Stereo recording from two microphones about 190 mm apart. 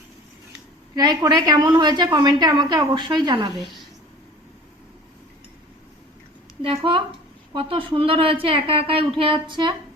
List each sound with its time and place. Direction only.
0.9 s a woman's voice: 20° right (ahead or behind)
6.6 s a woman's voice: 25° right (ahead or behind)